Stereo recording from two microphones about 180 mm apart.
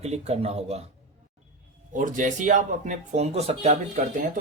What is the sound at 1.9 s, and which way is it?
Speech, 45° right (ahead or behind).